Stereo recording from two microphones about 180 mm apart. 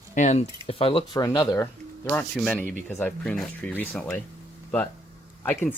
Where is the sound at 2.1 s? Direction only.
5° left (ahead or behind).